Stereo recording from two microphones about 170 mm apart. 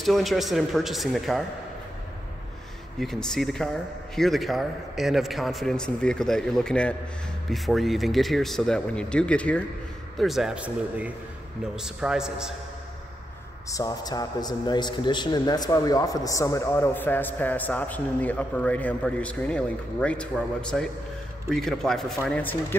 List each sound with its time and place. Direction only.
0.0 s speech: centre (ahead or behind)
3.0 s speech: 5° left (ahead or behind)
13.7 s a man's voice: 20° left (ahead or behind)